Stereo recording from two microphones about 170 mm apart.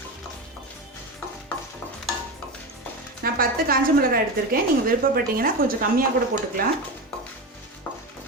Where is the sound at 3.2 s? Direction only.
60° right (ahead or behind).